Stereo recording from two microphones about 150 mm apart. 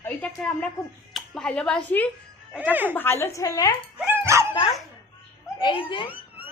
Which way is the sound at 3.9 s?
10° right (ahead or behind).